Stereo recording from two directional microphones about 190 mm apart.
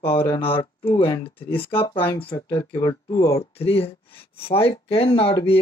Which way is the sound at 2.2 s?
25° left (ahead or behind).